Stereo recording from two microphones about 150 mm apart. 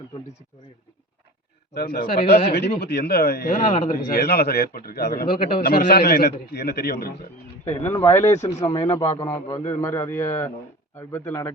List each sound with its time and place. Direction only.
1.7 s a man's voice: 90° left
7.9 s a man's voice: 15° left (ahead or behind)
8.4 s speech: 50° left (ahead or behind)
9.0 s a man's voice: 25° left (ahead or behind)